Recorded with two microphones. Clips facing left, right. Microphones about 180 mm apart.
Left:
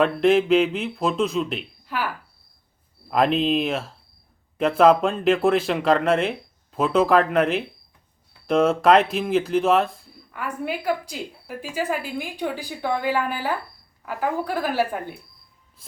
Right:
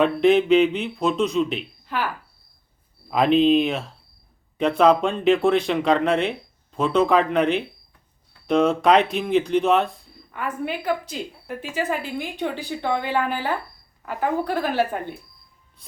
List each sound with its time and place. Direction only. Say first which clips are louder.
0.0 s speech: right 1 dB; centre (ahead or behind)
3.1 s speech: right 3 dB; centre (ahead or behind)